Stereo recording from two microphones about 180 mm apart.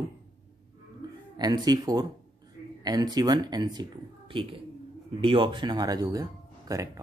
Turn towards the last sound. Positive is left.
turn(degrees=-20)  # may be behind; listen again after turning